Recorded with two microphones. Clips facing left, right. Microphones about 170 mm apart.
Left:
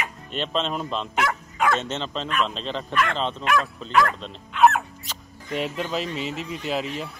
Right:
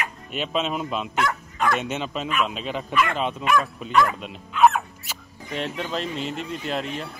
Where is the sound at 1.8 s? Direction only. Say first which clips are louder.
Right 1 dB; 10° right (ahead or behind).